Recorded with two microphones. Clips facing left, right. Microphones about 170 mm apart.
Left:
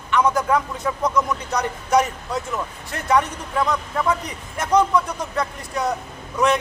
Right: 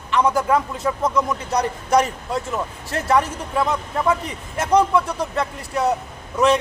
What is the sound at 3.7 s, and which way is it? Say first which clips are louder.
Speech: right 1 dB; 20° right (ahead or behind).